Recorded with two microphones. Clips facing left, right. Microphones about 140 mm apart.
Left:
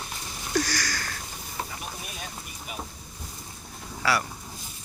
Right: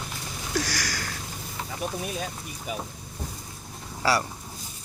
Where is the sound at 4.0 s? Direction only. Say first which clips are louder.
Right 2 dB; 30° right (ahead or behind).